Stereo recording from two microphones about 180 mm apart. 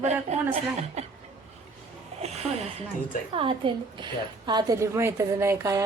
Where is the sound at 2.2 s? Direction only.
35° right (ahead or behind).